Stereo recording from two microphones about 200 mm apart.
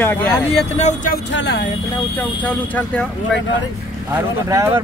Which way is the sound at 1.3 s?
60° left (ahead or behind).